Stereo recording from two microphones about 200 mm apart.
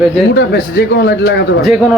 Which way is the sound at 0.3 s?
55° left (ahead or behind).